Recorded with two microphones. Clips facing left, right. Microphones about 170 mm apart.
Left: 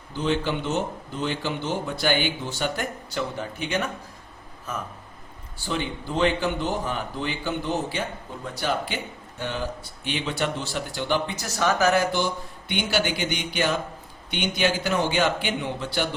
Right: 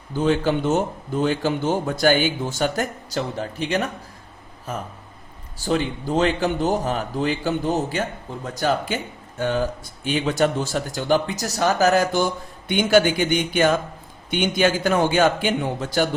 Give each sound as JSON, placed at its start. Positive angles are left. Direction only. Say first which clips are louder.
{"t": 0.1, "sound": "speech", "louder": "right 5 dB", "side_deg": -45}
{"t": 5.5, "sound": "speech", "louder": "right 6 dB", "side_deg": -40}